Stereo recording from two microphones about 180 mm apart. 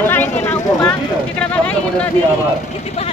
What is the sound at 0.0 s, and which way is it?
Vehicle, 10° left (ahead or behind).